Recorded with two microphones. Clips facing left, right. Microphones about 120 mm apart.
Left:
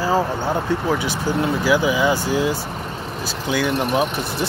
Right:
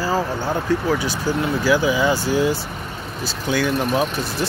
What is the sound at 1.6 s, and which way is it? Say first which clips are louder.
Speech: right 1 dB; 15° left (ahead or behind).